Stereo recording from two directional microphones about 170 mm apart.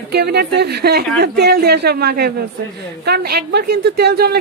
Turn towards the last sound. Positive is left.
turn(degrees=-65)  # may be behind; listen again after turning